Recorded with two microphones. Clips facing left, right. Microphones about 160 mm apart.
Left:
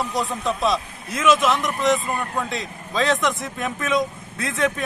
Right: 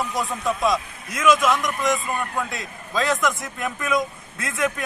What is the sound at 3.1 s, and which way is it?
Speech, centre (ahead or behind).